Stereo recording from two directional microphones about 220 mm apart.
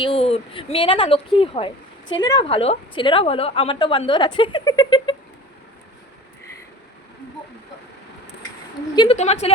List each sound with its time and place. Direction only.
0.0 s speech: 25° left (ahead or behind)
9.0 s speech: 30° left (ahead or behind)